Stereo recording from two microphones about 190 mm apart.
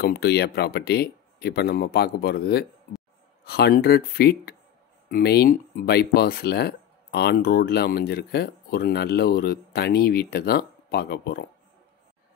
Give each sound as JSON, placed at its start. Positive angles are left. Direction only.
{"t": 0.0, "sound": "speech", "side_deg": 55}